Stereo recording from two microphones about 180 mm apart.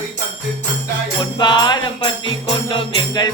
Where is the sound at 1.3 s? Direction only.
25° left (ahead or behind).